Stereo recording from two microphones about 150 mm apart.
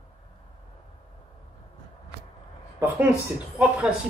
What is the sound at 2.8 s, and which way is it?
Speech, 15° right (ahead or behind).